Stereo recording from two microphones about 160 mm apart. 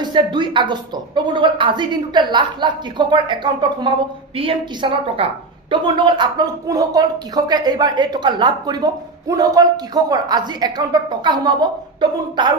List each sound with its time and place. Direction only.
0.0 s a woman's voice: 30° right (ahead or behind)